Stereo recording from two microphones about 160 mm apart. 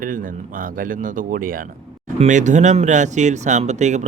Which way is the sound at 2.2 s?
50° right (ahead or behind).